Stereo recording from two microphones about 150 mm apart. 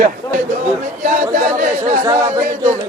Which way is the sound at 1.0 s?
65° right (ahead or behind).